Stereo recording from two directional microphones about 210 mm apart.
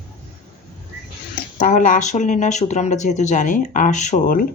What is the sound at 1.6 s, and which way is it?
Speech, 40° left (ahead or behind).